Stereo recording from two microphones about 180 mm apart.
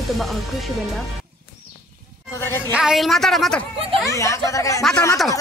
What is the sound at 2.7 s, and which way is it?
Speech, 5° right (ahead or behind).